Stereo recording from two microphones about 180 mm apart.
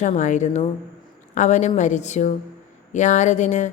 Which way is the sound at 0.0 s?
40° left (ahead or behind).